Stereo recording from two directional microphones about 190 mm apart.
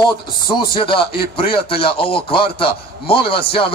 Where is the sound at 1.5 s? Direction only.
30° left (ahead or behind).